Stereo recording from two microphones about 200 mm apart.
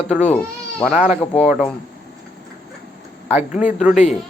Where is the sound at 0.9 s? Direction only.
5° right (ahead or behind).